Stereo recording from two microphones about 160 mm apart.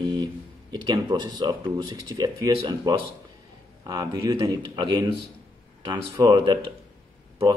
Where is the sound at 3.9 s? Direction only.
25° right (ahead or behind).